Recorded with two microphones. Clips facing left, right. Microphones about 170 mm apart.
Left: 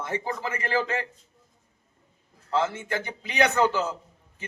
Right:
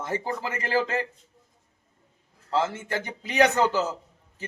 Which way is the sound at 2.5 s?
40° right (ahead or behind).